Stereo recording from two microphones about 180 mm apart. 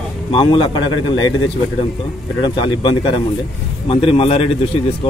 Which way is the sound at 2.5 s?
25° left (ahead or behind).